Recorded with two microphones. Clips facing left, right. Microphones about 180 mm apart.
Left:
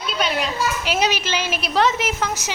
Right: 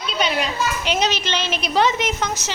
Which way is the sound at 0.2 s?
Centre (ahead or behind).